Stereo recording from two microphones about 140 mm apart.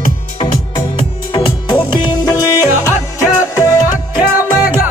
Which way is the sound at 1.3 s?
35° left (ahead or behind).